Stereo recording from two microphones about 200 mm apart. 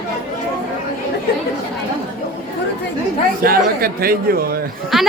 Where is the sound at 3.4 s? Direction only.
45° right (ahead or behind).